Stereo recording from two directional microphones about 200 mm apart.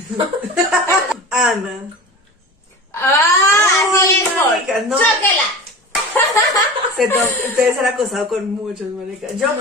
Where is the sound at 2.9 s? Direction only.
15° left (ahead or behind).